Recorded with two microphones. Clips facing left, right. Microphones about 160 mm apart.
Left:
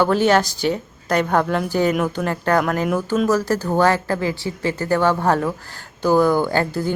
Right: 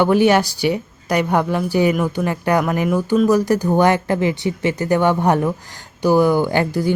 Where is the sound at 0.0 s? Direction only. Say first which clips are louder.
Right 2 dB; 15° right (ahead or behind).